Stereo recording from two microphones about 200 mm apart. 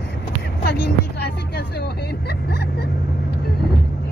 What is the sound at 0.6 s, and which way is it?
Vehicle, 55° left (ahead or behind).